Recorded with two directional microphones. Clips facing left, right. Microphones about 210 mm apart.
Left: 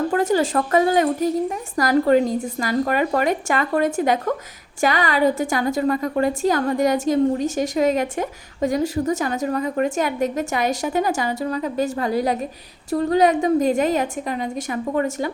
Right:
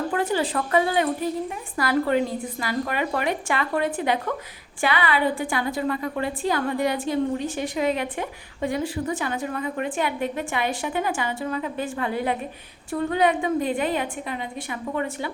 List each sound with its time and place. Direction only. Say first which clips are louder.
0.1 s a woman's voice: left 5 dB; 45° left (ahead or behind)